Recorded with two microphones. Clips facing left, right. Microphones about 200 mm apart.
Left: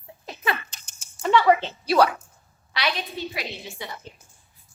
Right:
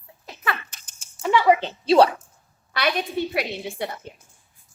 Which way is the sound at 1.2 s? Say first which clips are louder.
Even; 10° right (ahead or behind).